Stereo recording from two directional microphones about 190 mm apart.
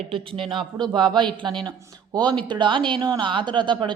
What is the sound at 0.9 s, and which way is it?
Speech, 25° right (ahead or behind).